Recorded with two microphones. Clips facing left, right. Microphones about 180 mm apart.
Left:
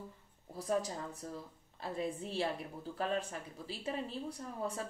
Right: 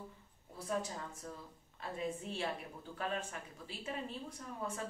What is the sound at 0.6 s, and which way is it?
Speech, 35° left (ahead or behind).